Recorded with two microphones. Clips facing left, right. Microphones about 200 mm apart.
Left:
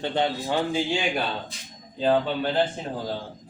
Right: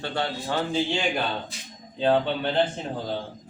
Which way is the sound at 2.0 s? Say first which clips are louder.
Even; 5° left (ahead or behind).